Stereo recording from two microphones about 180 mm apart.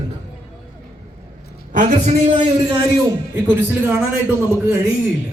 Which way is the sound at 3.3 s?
15° right (ahead or behind).